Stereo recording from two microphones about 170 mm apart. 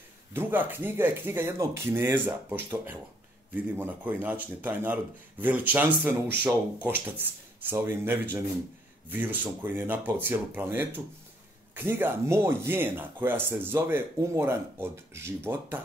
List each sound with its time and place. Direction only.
0.3 s speech: 10° right (ahead or behind)